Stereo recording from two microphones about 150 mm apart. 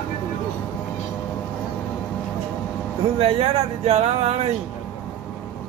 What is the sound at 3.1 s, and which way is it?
Speech, 40° right (ahead or behind).